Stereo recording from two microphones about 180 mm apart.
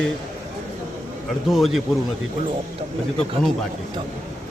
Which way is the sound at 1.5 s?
Centre (ahead or behind).